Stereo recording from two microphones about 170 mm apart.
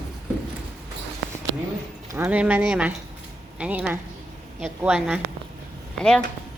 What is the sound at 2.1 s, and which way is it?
A woman's voice, 15° right (ahead or behind).